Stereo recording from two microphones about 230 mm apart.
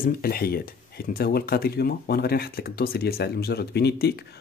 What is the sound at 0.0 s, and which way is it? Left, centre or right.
Speech, left.